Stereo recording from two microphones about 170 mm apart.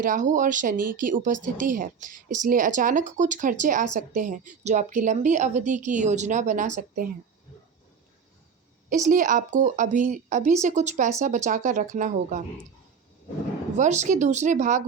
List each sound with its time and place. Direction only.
0.0 s speech: 50° right (ahead or behind)
8.9 s speech: 50° right (ahead or behind)
13.7 s speech: 45° right (ahead or behind)